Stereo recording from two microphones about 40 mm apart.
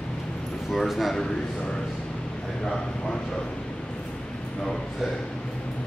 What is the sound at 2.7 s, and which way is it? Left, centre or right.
Speech, centre.